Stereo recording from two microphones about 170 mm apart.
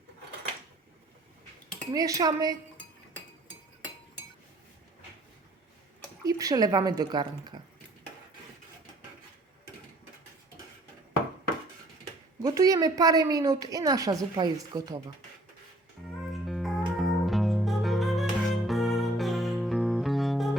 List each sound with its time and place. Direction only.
1.9 s a woman's voice: 20° right (ahead or behind)
6.2 s a woman's voice: 20° right (ahead or behind)
12.4 s a woman's voice: 20° right (ahead or behind)
16.3 s music: centre (ahead or behind)